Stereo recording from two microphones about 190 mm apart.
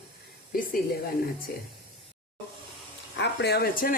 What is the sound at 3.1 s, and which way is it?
Speech, 60° left (ahead or behind).